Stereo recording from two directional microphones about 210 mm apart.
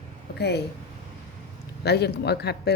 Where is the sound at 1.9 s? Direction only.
50° left (ahead or behind).